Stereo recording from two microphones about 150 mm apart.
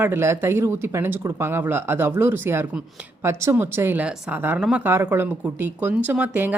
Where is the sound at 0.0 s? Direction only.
15° right (ahead or behind).